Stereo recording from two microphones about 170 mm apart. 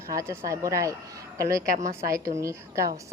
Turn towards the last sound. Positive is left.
turn(degrees=-20)  # may be behind; listen again after turning